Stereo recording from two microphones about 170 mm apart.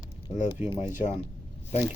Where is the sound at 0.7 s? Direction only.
45° left (ahead or behind).